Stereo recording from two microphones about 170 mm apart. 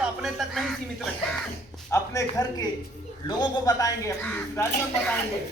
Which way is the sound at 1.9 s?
20° left (ahead or behind).